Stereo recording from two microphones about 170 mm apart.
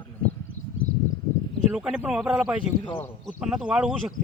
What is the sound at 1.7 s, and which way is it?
Speech, 5° right (ahead or behind).